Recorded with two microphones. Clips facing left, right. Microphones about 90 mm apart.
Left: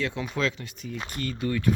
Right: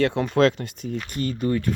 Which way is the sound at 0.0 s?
60° right (ahead or behind).